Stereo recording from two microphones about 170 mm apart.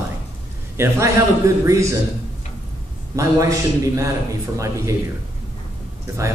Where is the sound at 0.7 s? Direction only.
15° right (ahead or behind).